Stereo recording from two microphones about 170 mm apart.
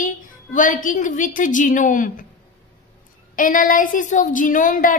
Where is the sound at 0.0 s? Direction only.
50° left (ahead or behind).